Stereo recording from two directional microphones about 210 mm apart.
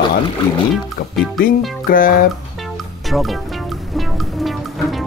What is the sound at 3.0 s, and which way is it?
Speech, centre (ahead or behind).